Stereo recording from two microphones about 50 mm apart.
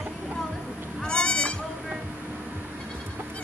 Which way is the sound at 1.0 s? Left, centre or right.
Centre.